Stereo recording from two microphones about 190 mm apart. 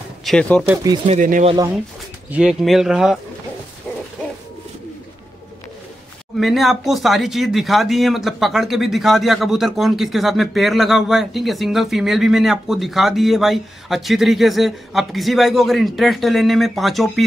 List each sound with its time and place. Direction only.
0.2 s speech: 5° left (ahead or behind)
0.8 s speech: 25° right (ahead or behind)
1.1 s speech: 40° right (ahead or behind)
2.3 s speech: centre (ahead or behind)
6.4 s speech: centre (ahead or behind)